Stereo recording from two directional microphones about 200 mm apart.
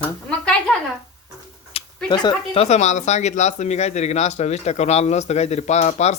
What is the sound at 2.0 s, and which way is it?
Speech, 20° left (ahead or behind).